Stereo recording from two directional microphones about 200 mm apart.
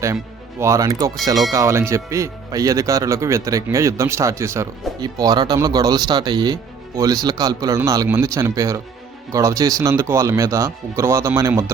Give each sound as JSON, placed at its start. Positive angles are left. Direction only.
{"t": 0.6, "sound": "speech", "side_deg": -15}